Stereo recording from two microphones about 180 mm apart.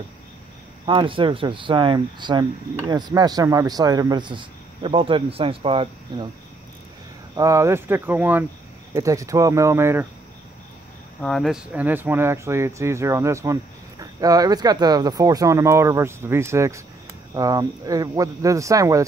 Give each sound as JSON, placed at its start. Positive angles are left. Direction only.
{"t": 0.8, "sound": "speech", "side_deg": -25}
{"t": 7.3, "sound": "speech", "side_deg": -20}
{"t": 11.1, "sound": "speech", "side_deg": 0}